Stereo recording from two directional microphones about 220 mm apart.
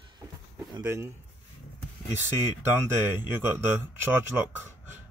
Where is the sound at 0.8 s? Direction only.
10° right (ahead or behind).